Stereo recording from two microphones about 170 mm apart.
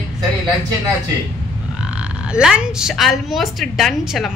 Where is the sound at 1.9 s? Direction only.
5° right (ahead or behind).